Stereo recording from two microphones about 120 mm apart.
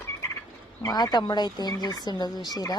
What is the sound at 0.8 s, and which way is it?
Speech, 30° left (ahead or behind).